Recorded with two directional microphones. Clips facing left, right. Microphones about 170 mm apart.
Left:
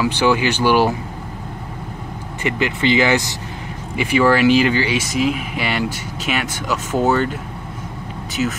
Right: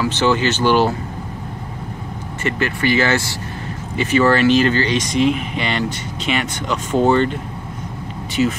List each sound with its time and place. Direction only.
0.0 s speech: 15° left (ahead or behind)
2.4 s speech: 15° left (ahead or behind)
8.4 s speech: centre (ahead or behind)